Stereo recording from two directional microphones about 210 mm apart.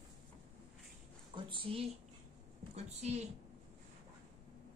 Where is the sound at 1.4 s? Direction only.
25° right (ahead or behind).